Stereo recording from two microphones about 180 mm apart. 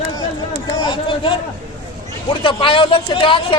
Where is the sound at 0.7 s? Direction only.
25° left (ahead or behind).